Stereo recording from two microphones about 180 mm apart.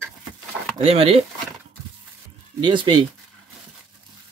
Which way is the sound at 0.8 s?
35° right (ahead or behind).